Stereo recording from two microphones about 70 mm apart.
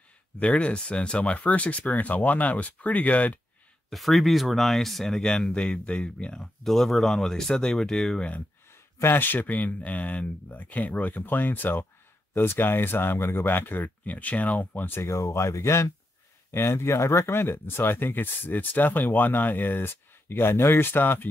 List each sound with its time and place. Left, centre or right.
0.4 s speech: centre
3.9 s speech: centre
9.0 s speech: left
15.1 s speech: left